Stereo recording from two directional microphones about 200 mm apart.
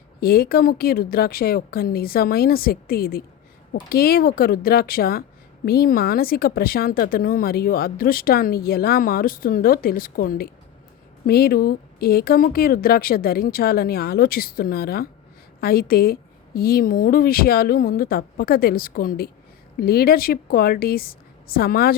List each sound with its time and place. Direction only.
0.2 s a woman's voice: 50° left (ahead or behind)